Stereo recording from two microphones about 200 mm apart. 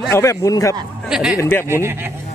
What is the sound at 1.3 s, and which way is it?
Speech, 10° left (ahead or behind).